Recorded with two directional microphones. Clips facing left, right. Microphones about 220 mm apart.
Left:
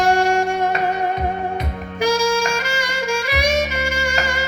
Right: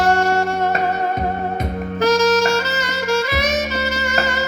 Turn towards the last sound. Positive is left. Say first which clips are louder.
# right 2 dB
turn(degrees=10)  # may be behind; listen again after turning